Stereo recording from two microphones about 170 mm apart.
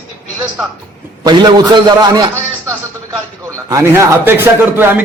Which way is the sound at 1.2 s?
25° right (ahead or behind).